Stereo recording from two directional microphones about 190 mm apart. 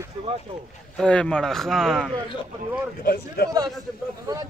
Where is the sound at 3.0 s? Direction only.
50° left (ahead or behind).